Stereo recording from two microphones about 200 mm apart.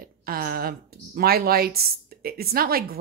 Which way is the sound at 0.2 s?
45° right (ahead or behind).